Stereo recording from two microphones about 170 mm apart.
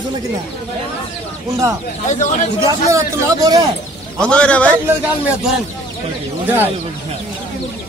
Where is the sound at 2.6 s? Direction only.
20° right (ahead or behind).